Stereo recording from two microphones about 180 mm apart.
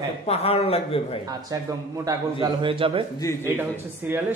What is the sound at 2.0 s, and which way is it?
A man's voice, 25° right (ahead or behind).